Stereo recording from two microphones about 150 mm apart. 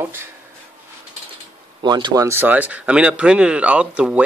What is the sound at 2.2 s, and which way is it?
Speech, 15° right (ahead or behind).